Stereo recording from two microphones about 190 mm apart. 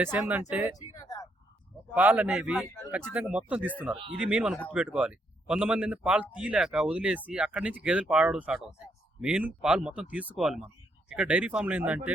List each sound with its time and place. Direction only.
0.0 s speech: 10° right (ahead or behind)
0.8 s a sound: 20° left (ahead or behind)
2.0 s a man's voice: 10° right (ahead or behind)